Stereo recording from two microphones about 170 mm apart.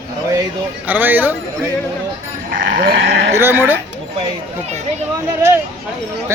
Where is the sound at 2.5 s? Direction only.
65° right (ahead or behind); by 3.3 s 90° right.